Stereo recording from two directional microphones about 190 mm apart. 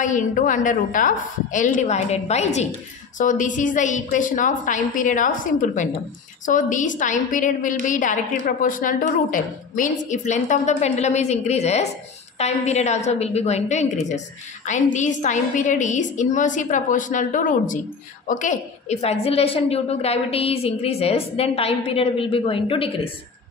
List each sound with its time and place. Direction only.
0.0 s a woman's voice: 40° left (ahead or behind)